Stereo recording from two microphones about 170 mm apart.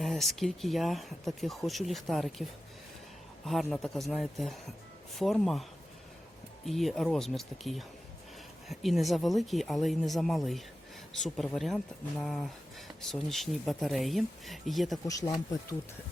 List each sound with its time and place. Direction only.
0.0 s speech: centre (ahead or behind)
6.7 s speech: centre (ahead or behind)
15.0 s speech: 20° left (ahead or behind)